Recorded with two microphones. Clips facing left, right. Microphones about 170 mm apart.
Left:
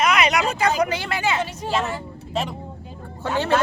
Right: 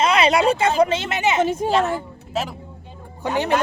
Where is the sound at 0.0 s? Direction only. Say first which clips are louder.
Right 3 dB; 30° right (ahead or behind).